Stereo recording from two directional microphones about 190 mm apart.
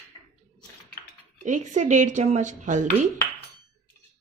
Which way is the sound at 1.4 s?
40° right (ahead or behind).